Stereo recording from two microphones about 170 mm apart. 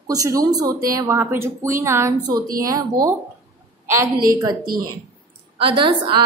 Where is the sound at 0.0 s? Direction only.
20° right (ahead or behind).